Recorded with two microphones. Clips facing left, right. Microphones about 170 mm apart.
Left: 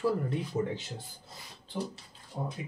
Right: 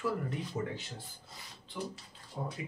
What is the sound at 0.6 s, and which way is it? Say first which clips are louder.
Speech: left 6 dB; 20° left (ahead or behind).